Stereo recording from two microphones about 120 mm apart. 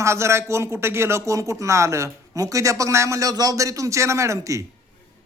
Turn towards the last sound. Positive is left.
turn(degrees=-25)  # may be behind; listen again after turning